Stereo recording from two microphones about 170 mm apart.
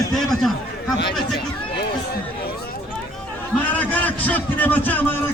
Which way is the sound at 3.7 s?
10° left (ahead or behind).